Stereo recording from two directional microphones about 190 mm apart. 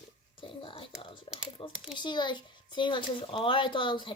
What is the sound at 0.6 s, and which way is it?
Speech, 25° left (ahead or behind).